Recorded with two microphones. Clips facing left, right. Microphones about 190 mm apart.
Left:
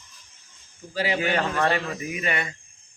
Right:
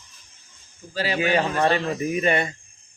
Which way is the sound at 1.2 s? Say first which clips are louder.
Right 5 dB; 15° right (ahead or behind).